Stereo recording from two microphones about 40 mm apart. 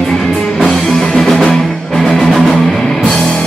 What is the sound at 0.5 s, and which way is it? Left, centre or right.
Music, centre.